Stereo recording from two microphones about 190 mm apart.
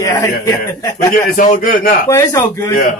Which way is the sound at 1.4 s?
45° left (ahead or behind).